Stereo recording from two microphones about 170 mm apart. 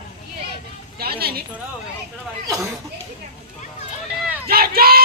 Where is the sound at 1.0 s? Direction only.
60° right (ahead or behind).